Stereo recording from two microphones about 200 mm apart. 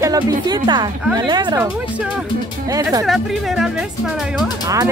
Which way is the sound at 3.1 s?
Centre (ahead or behind).